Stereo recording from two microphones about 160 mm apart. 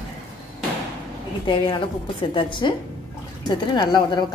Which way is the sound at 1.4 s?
30° left (ahead or behind).